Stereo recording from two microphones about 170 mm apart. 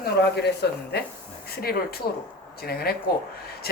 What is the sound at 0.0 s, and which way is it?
Speech, 75° left (ahead or behind).